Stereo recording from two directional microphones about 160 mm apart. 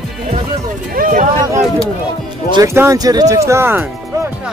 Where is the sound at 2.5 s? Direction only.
15° right (ahead or behind).